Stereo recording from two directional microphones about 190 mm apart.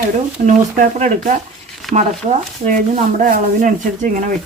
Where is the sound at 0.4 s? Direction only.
40° right (ahead or behind).